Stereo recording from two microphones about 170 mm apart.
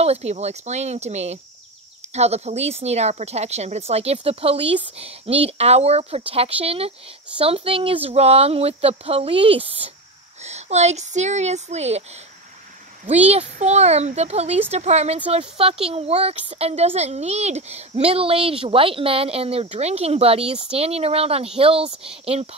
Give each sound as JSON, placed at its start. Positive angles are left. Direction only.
{"t": 0.0, "sound": "a child's voice", "side_deg": -40}
{"t": 13.3, "sound": "a child's voice", "side_deg": -40}